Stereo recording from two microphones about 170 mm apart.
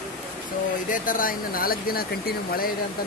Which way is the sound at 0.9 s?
55° left (ahead or behind).